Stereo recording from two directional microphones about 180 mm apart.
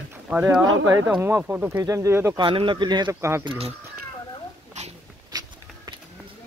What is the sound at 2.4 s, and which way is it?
Speech, 30° right (ahead or behind).